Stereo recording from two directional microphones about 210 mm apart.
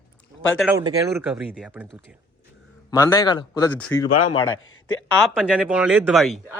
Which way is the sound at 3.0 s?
15° left (ahead or behind).